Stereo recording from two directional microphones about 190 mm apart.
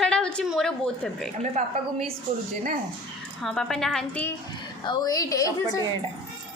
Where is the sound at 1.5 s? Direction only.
35° right (ahead or behind).